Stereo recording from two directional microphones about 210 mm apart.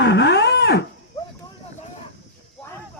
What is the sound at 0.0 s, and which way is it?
Cattle, 55° left (ahead or behind).